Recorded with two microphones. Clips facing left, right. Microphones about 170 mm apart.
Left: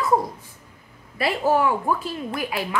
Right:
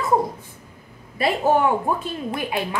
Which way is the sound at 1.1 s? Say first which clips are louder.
Right 2 dB; 25° right (ahead or behind).